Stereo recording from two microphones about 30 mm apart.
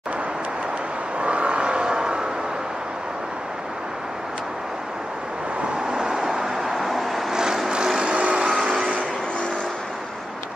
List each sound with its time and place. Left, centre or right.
1.2 s vehicle: right
5.9 s vehicle: centre
8.0 s vehicle: right